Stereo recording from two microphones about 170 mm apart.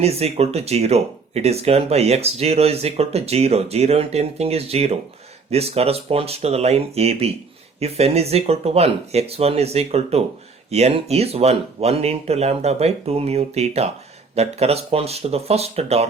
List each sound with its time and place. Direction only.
0.0 s speech: 35° right (ahead or behind)